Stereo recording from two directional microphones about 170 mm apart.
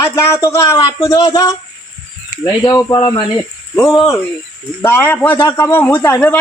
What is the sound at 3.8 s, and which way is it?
Speech, centre (ahead or behind).